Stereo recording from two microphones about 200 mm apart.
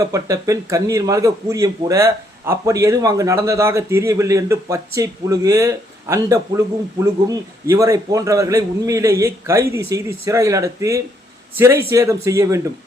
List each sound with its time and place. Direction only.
0.0 s speech: 15° right (ahead or behind)